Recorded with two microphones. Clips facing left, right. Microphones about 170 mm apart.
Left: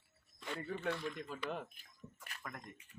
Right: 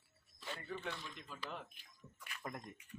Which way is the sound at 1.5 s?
50° left (ahead or behind).